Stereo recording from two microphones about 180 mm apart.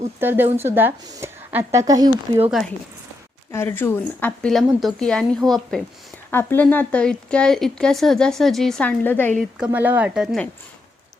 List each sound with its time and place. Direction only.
0.2 s a woman's voice: 10° right (ahead or behind)
3.5 s speech: 15° left (ahead or behind)
9.4 s a woman's voice: 5° right (ahead or behind)